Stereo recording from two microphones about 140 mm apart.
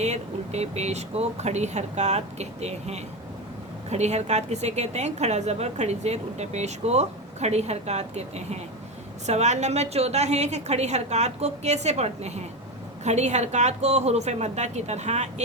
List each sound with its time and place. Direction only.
0.0 s a woman's voice: 50° right (ahead or behind)